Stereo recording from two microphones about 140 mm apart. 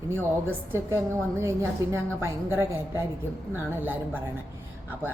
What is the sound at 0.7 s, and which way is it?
A woman's voice, 15° right (ahead or behind).